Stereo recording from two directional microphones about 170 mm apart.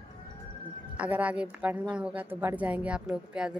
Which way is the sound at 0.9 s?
10° right (ahead or behind).